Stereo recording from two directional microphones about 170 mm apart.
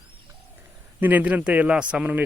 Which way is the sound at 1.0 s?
10° right (ahead or behind).